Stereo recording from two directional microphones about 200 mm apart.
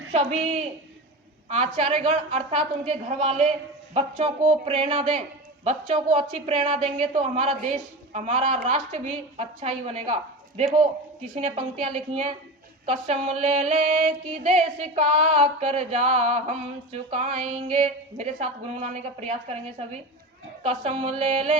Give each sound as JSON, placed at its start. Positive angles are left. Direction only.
{"t": 0.1, "sound": "music", "side_deg": -35}
{"t": 3.9, "sound": "speech", "side_deg": -30}
{"t": 6.8, "sound": "music", "side_deg": -30}
{"t": 11.3, "sound": "music", "side_deg": -30}
{"t": 20.7, "sound": "speech", "side_deg": -30}